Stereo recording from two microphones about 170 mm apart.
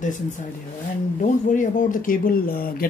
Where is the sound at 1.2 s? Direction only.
50° left (ahead or behind).